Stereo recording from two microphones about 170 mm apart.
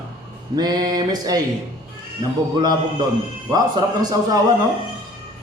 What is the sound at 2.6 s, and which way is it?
A man's voice, 25° right (ahead or behind).